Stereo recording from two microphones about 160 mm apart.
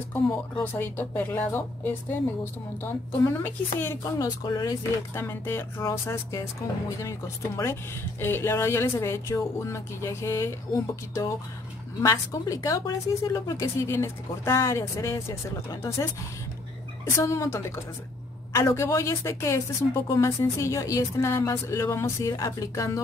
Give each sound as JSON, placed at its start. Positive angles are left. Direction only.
{"t": 0.7, "sound": "a woman's voice", "side_deg": 15}